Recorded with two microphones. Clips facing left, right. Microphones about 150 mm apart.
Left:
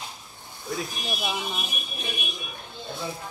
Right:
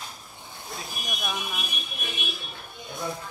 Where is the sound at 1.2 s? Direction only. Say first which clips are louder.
Left 2 dB; 25° left (ahead or behind).